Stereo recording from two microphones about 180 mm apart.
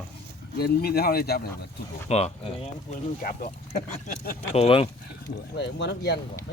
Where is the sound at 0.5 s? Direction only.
60° left (ahead or behind).